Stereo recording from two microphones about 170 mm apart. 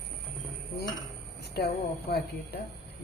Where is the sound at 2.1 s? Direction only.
70° left (ahead or behind).